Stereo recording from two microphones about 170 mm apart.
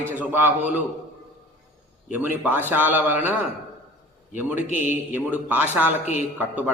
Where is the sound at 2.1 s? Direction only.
10° right (ahead or behind).